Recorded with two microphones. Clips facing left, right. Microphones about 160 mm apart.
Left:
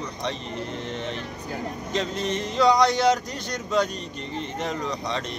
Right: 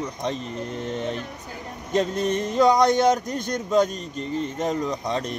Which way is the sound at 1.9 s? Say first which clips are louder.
Right 5 dB; 50° right (ahead or behind).